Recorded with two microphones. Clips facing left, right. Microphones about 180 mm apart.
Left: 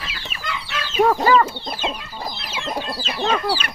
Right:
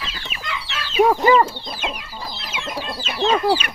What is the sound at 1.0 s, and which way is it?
Speech, 15° right (ahead or behind).